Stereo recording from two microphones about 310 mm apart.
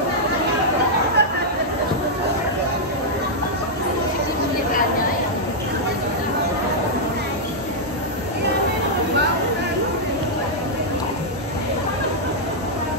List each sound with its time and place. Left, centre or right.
1.2 s chatter: right